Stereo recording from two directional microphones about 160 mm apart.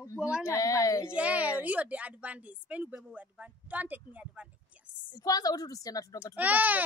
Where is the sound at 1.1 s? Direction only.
10° right (ahead or behind).